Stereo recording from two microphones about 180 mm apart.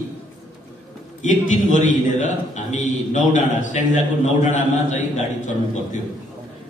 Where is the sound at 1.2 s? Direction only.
45° left (ahead or behind).